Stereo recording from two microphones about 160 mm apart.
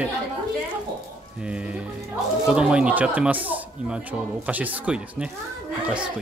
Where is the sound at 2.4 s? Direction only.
5° right (ahead or behind).